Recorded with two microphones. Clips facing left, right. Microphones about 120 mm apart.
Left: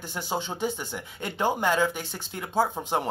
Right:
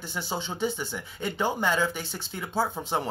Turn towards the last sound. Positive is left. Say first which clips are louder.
# left 2 dB
turn(degrees=15)  # may be behind; listen again after turning